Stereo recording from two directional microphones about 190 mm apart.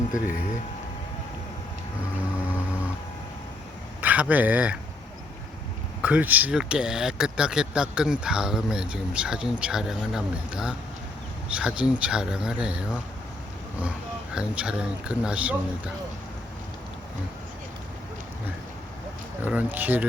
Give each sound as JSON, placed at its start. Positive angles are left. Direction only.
{"t": 0.1, "sound": "speech", "side_deg": 45}
{"t": 4.0, "sound": "speech", "side_deg": -10}
{"t": 6.0, "sound": "speech", "side_deg": -5}
{"t": 14.3, "sound": "speech", "side_deg": -5}
{"t": 19.4, "sound": "speech", "side_deg": -10}